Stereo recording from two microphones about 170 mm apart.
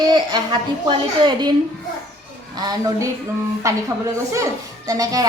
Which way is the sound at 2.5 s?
25° right (ahead or behind).